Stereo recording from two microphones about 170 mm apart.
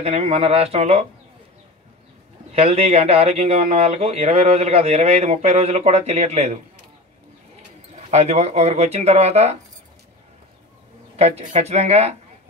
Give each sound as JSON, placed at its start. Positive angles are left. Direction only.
{"t": 0.0, "sound": "speech", "side_deg": -40}
{"t": 2.5, "sound": "speech", "side_deg": -35}
{"t": 8.1, "sound": "speech", "side_deg": -40}
{"t": 11.1, "sound": "speech", "side_deg": -40}